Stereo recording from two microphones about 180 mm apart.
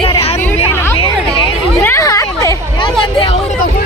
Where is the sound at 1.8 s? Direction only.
15° left (ahead or behind).